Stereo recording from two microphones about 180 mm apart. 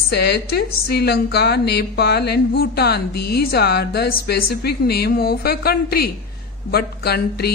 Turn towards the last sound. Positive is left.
turn(degrees=60)  # may be behind; listen again after turning